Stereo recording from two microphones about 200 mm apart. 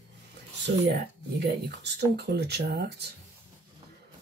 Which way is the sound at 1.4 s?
55° right (ahead or behind).